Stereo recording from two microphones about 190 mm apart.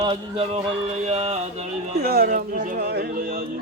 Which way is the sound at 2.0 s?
55° right (ahead or behind).